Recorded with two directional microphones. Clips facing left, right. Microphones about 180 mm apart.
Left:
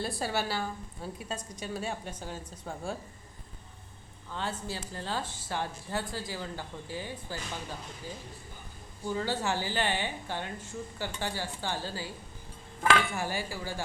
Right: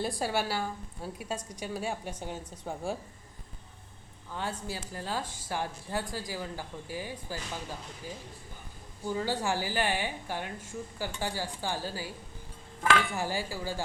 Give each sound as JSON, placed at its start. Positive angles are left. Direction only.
{"t": 0.0, "sound": "a woman's voice", "side_deg": -15}
{"t": 4.3, "sound": "a woman's voice", "side_deg": -10}
{"t": 9.0, "sound": "a woman's voice", "side_deg": -10}
{"t": 13.1, "sound": "a woman's voice", "side_deg": -15}